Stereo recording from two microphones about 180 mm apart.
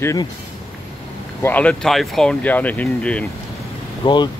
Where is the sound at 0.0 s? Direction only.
15° left (ahead or behind).